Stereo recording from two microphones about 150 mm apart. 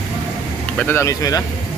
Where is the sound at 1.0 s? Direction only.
25° left (ahead or behind).